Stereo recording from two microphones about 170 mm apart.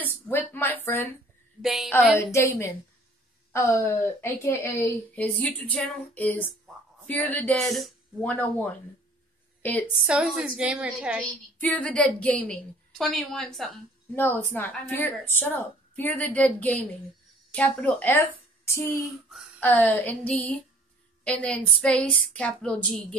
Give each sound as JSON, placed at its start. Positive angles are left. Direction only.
{"t": 0.0, "sound": "a sound", "side_deg": 10}
{"t": 1.6, "sound": "a woman's voice", "side_deg": 0}
{"t": 2.3, "sound": "a woman's voice", "side_deg": 15}
{"t": 10.0, "sound": "a woman's voice", "side_deg": -5}
{"t": 11.6, "sound": "a woman's voice", "side_deg": 10}